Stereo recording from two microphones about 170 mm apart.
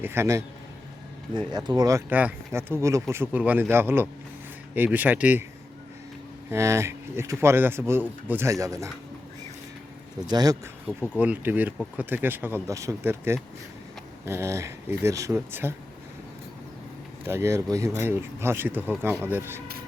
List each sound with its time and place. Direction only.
0.0 s speech: 15° right (ahead or behind)
1.3 s speech: 25° right (ahead or behind); by 5.5 s 10° right (ahead or behind)
6.5 s speech: 15° right (ahead or behind)
10.2 s speech: 25° right (ahead or behind)
11.2 s speech: 10° right (ahead or behind)
17.2 s speech: 15° right (ahead or behind)